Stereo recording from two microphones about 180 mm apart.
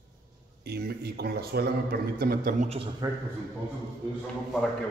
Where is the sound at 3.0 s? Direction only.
20° right (ahead or behind).